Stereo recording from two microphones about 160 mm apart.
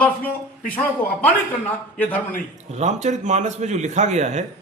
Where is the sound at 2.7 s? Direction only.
45° right (ahead or behind).